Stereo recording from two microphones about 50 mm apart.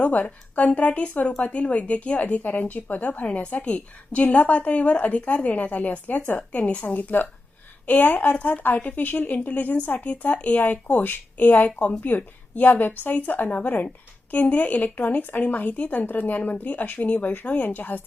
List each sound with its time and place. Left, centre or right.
0.0 s a woman's voice: left